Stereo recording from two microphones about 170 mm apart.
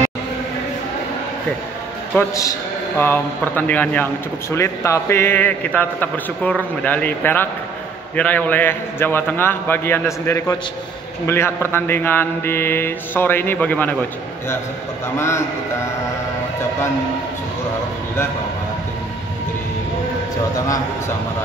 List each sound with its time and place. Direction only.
2.1 s a man's voice: 20° left (ahead or behind)
15.1 s speech: 15° left (ahead or behind)
20.5 s a man's voice: 20° left (ahead or behind)